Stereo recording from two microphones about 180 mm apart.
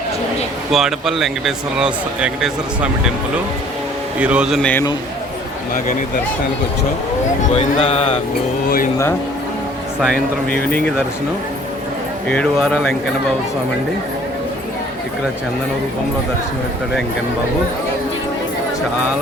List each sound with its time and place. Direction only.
0.7 s speech: centre (ahead or behind)
4.2 s speech: 5° right (ahead or behind)
7.5 s speech: 35° left (ahead or behind)
10.7 s speech: 10° left (ahead or behind)
12.3 s speech: 5° left (ahead or behind)